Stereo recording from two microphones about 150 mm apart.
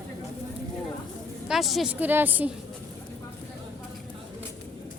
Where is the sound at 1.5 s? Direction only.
Centre (ahead or behind).